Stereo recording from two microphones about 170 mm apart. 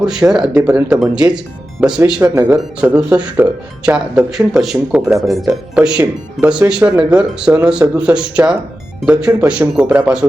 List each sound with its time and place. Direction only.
0.0 s speech: centre (ahead or behind)